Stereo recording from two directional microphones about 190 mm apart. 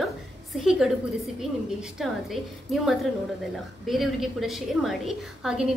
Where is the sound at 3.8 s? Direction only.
Centre (ahead or behind).